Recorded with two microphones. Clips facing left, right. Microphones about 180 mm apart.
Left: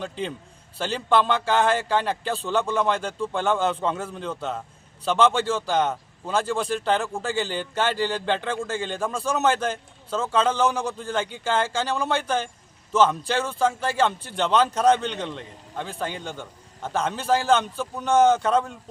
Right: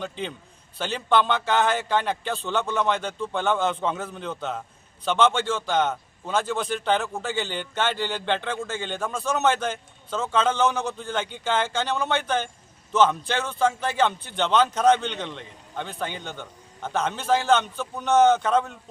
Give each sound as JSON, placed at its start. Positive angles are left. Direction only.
{"t": 0.0, "sound": "a man's voice", "side_deg": 0}